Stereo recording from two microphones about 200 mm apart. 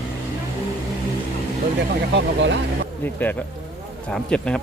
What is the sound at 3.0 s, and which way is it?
A man's voice, 10° left (ahead or behind).